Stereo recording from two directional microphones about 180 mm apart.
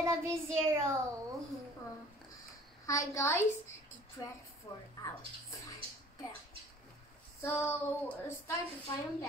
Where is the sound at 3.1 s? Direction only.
15° left (ahead or behind).